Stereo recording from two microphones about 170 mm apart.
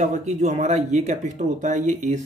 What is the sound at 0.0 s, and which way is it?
Speech, 45° right (ahead or behind).